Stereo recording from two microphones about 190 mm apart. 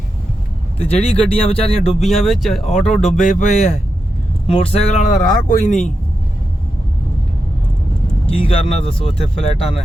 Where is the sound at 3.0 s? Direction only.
40° left (ahead or behind).